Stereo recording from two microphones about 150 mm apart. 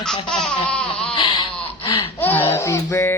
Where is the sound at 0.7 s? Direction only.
5° left (ahead or behind).